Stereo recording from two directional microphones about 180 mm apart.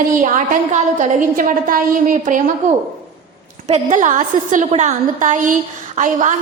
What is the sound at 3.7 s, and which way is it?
A woman's voice, 45° right (ahead or behind).